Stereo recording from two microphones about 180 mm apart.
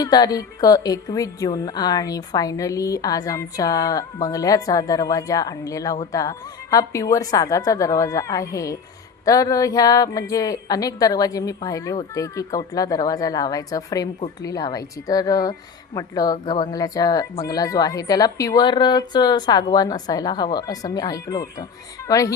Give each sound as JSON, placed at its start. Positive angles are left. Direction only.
{"t": 0.0, "sound": "speech", "side_deg": 20}